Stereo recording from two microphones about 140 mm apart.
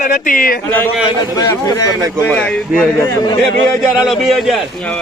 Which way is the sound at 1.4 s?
25° left (ahead or behind).